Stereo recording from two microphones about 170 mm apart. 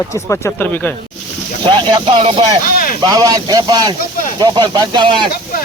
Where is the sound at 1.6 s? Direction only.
30° right (ahead or behind).